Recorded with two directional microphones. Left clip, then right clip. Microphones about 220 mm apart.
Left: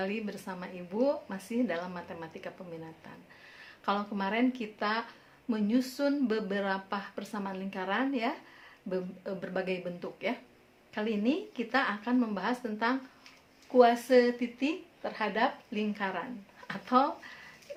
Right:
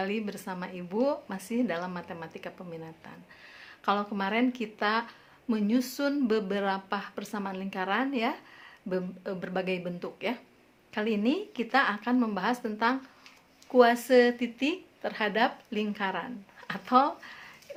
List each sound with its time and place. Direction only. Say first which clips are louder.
0.0 s speech: right 3 dB; 25° right (ahead or behind)
3.6 s speech: right 4 dB; 25° right (ahead or behind)